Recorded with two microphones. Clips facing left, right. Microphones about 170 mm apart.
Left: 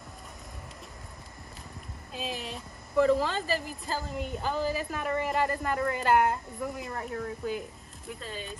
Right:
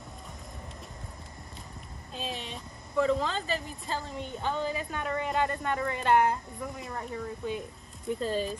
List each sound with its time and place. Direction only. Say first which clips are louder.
2.1 s a woman's voice: left 1 dB; centre (ahead or behind)